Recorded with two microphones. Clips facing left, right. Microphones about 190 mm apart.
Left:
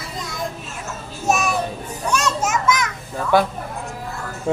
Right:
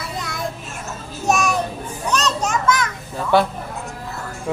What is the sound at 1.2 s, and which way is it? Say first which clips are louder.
Child singing: right 1 dB; 5° left (ahead or behind).